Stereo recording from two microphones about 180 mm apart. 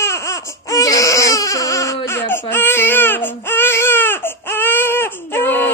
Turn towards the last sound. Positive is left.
turn(degrees=10)  # may be behind; listen again after turning